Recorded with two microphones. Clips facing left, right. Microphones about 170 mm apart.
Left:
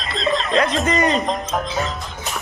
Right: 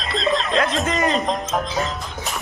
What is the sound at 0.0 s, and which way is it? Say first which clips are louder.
A man's voice: even; centre (ahead or behind).